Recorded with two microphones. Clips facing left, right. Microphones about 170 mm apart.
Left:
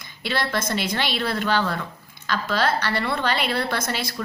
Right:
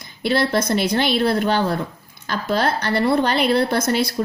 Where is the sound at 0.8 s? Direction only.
55° right (ahead or behind).